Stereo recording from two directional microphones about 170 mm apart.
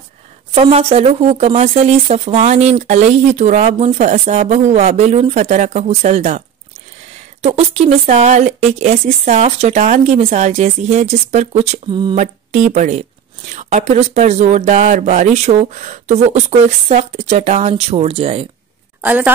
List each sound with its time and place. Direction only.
0.6 s speech: 35° right (ahead or behind)
7.4 s speech: 40° right (ahead or behind)
18.9 s a woman's voice: 10° right (ahead or behind)